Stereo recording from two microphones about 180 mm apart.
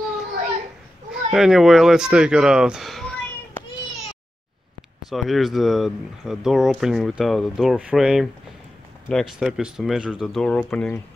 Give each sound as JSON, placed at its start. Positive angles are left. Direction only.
{"t": 1.1, "sound": "speech", "side_deg": 0}
{"t": 5.1, "sound": "speech", "side_deg": 0}